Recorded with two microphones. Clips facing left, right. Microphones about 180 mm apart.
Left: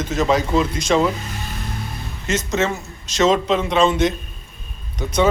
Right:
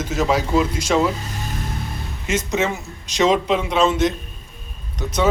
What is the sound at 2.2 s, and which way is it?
A man's voice, 10° right (ahead or behind).